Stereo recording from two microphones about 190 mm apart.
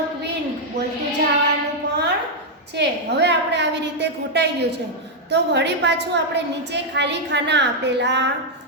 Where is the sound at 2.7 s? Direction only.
65° right (ahead or behind).